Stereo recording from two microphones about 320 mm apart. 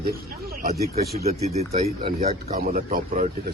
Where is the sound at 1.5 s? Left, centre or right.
Centre.